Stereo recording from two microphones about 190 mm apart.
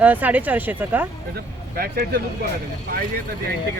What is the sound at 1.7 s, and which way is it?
Speech, 55° right (ahead or behind).